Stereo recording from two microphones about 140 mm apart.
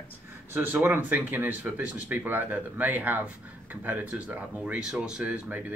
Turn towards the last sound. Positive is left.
turn(degrees=-10)  # may be behind; listen again after turning